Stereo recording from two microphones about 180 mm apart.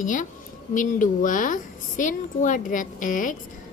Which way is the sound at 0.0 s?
45° left (ahead or behind).